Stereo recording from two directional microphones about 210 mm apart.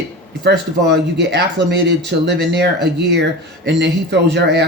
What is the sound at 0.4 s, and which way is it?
Speech, 55° right (ahead or behind).